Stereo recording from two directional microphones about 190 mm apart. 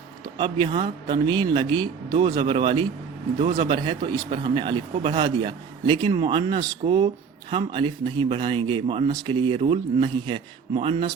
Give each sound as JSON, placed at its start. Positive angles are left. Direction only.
{"t": 0.3, "sound": "speech", "side_deg": -25}